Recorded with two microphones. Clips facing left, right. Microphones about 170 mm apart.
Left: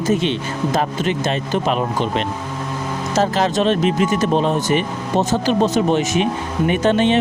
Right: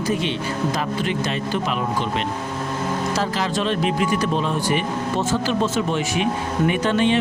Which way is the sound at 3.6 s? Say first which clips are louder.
Left 4 dB; 20° left (ahead or behind).